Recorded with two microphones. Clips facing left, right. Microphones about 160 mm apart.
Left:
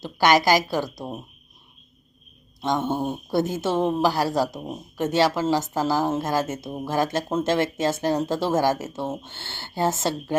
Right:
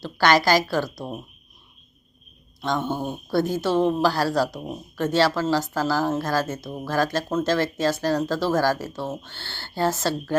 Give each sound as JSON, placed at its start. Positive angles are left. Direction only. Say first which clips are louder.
{"t": 0.0, "sound": "a woman's voice", "louder": "even", "side_deg": 15}
{"t": 2.6, "sound": "speech", "louder": "left 1 dB", "side_deg": 20}